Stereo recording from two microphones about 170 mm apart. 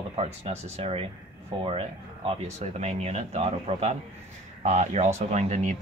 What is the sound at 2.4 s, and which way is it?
Speech, 40° right (ahead or behind).